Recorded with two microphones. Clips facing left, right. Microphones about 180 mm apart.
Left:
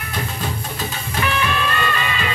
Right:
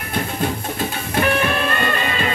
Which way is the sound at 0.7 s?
55° right (ahead or behind).